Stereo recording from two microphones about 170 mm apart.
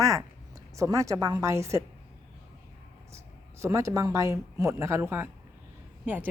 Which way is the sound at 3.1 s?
15° right (ahead or behind).